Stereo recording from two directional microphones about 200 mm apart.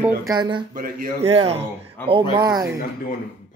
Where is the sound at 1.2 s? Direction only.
30° right (ahead or behind).